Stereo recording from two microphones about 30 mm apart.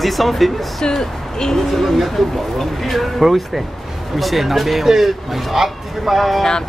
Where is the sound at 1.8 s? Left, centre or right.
Centre.